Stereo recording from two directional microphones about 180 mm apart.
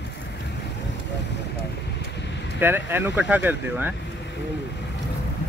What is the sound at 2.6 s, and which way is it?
Speech, 10° right (ahead or behind).